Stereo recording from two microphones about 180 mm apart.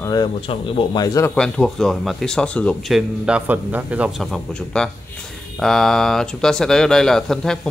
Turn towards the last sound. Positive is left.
turn(degrees=5)  # may be behind; listen again after turning